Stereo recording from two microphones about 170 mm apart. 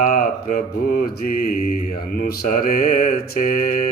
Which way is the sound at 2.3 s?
55° left (ahead or behind).